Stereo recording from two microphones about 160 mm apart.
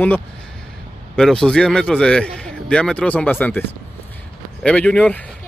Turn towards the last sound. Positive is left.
turn(degrees=5)  # may be behind; listen again after turning